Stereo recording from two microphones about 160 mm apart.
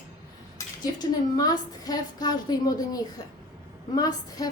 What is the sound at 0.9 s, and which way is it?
A woman's voice, 25° left (ahead or behind).